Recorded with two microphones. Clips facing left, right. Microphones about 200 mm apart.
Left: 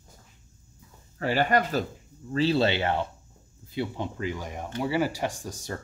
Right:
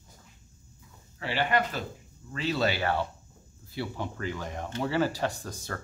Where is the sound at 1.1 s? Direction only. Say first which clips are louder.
Left 4 dB; 45° left (ahead or behind).